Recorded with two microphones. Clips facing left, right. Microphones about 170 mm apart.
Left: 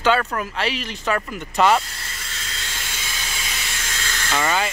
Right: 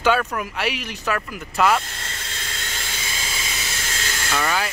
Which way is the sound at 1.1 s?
Centre (ahead or behind).